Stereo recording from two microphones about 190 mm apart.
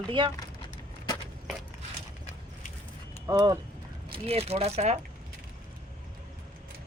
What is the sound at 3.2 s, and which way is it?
Speech, 20° right (ahead or behind).